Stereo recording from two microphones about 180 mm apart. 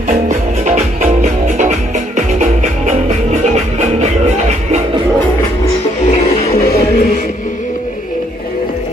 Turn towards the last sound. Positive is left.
turn(degrees=55)  # may be behind; listen again after turning